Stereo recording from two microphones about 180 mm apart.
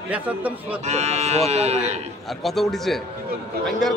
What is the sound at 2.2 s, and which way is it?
Speech, centre (ahead or behind).